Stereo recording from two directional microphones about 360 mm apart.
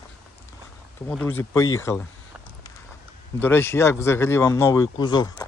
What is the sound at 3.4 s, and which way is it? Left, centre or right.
Speech, centre.